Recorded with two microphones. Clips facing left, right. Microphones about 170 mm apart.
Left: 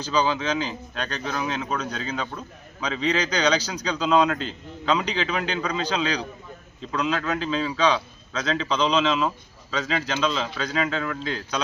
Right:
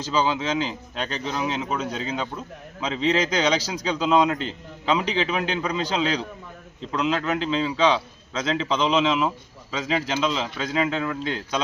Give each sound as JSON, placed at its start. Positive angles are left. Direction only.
{"t": 0.0, "sound": "a man's voice", "side_deg": -25}